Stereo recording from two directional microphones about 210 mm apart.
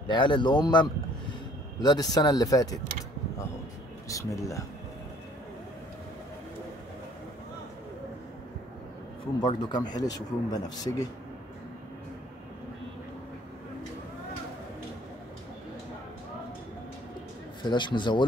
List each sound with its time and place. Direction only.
0.0 s speech: 20° left (ahead or behind)
4.1 s speech: 15° left (ahead or behind)
9.4 s speech: 20° left (ahead or behind)
17.6 s speech: 20° left (ahead or behind)